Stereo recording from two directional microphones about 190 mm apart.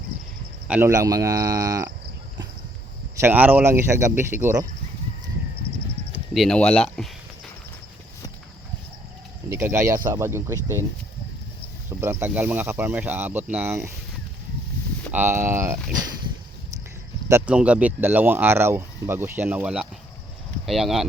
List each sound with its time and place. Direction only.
0.7 s speech: 15° right (ahead or behind)
3.2 s speech: 10° right (ahead or behind)
6.1 s speech: centre (ahead or behind)
9.5 s speech: 15° right (ahead or behind)
11.9 s speech: 10° right (ahead or behind)
15.1 s speech: 10° right (ahead or behind)
17.2 s speech: 10° right (ahead or behind)